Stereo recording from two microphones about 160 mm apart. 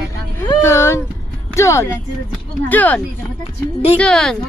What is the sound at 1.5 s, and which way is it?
Child singing, 20° left (ahead or behind).